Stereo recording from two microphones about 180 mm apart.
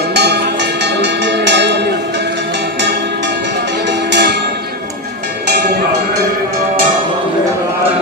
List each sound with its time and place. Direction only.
0.1 s music: 65° right (ahead or behind)
3.8 s music: 70° right (ahead or behind)